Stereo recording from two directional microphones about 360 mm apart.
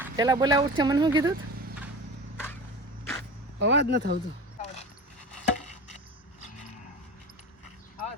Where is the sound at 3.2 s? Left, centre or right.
Right.